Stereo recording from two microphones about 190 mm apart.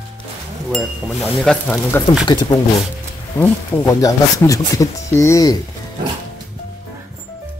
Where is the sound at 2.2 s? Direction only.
20° left (ahead or behind).